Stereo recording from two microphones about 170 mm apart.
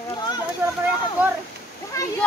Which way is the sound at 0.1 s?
25° left (ahead or behind).